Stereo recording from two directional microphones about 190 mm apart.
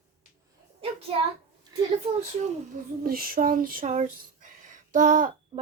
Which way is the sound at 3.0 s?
50° right (ahead or behind).